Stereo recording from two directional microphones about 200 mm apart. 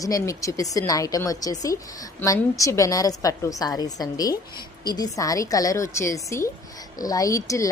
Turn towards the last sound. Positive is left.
turn(degrees=15)  # may be behind; listen again after turning